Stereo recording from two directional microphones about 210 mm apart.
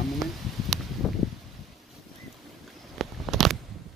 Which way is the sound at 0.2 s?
Centre (ahead or behind).